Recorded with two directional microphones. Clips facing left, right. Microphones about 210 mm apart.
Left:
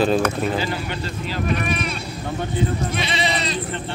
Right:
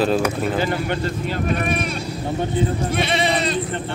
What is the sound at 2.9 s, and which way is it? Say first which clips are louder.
Sheep: right 4 dB; 55° right (ahead or behind).